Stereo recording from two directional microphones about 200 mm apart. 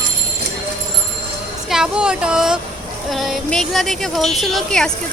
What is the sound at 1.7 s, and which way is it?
A woman's voice, 5° right (ahead or behind).